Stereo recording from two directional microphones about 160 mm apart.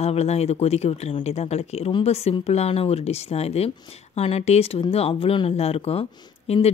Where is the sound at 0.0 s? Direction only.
40° left (ahead or behind).